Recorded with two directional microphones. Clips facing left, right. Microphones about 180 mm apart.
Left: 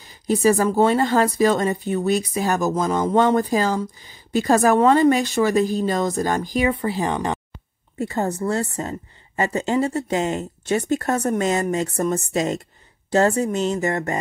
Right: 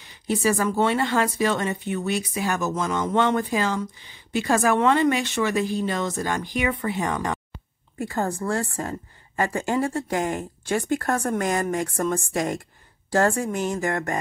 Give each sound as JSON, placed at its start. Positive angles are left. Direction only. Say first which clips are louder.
{"t": 0.0, "sound": "speech", "louder": "left 5 dB", "side_deg": 35}